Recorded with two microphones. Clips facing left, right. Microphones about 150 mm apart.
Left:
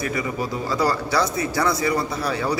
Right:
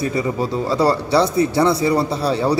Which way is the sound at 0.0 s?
30° right (ahead or behind).